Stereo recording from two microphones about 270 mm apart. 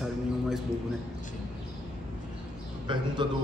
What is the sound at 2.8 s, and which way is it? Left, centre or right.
Speech, centre.